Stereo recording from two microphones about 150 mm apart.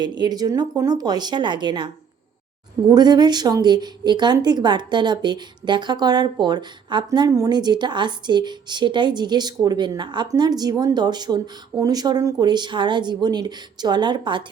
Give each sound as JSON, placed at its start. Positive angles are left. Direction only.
{"t": 0.0, "sound": "speech", "side_deg": -30}